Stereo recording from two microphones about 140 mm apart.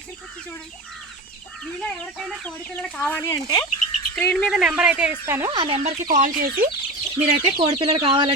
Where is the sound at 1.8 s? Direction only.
5° left (ahead or behind).